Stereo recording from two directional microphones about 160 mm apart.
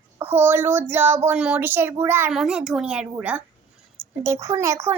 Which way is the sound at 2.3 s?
Centre (ahead or behind).